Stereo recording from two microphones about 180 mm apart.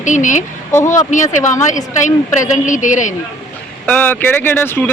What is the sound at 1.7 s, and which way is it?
Speech, 45° left (ahead or behind).